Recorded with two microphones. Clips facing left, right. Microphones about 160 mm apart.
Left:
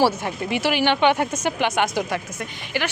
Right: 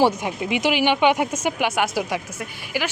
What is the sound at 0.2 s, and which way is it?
Speech, 15° right (ahead or behind).